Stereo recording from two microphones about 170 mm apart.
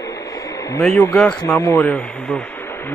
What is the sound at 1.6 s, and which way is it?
Speech, 20° left (ahead or behind).